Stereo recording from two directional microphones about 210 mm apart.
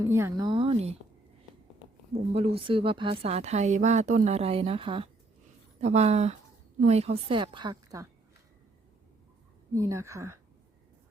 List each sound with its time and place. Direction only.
0.0 s speech: 10° right (ahead or behind)
2.3 s speech: 25° right (ahead or behind)
9.7 s a woman's voice: 15° right (ahead or behind)